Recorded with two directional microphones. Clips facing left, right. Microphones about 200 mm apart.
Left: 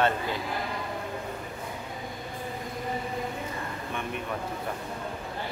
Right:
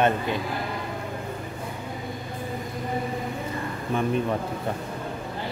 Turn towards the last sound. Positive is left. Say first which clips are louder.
# right 9 dB
turn(degrees=-35)  # may be behind; listen again after turning